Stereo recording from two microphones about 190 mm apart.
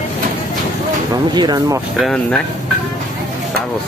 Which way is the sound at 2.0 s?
5° left (ahead or behind).